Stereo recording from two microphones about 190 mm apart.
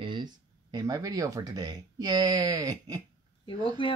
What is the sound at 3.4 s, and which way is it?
Speech, 25° left (ahead or behind).